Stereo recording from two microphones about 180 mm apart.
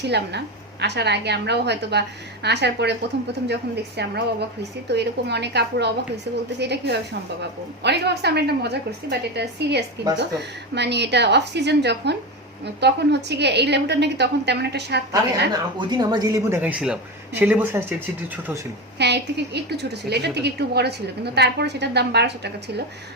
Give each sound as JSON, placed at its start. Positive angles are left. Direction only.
{"t": 0.0, "sound": "a woman's voice", "side_deg": -70}
{"t": 15.9, "sound": "speech", "side_deg": -25}
{"t": 16.6, "sound": "speech", "side_deg": -5}
{"t": 18.9, "sound": "a woman's voice", "side_deg": -70}